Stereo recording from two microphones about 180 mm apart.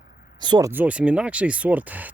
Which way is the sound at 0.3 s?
25° right (ahead or behind).